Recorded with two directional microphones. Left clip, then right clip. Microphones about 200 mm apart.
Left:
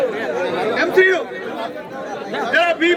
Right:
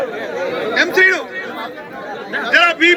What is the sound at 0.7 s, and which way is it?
Speech, 45° right (ahead or behind).